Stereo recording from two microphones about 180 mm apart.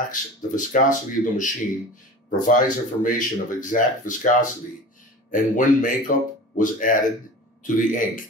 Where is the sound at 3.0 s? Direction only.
45° left (ahead or behind).